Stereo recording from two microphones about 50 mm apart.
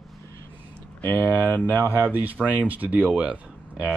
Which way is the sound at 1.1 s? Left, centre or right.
Right.